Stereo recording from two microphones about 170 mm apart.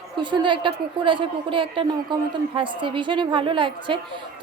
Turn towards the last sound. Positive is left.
turn(degrees=-30)  # may be behind; listen again after turning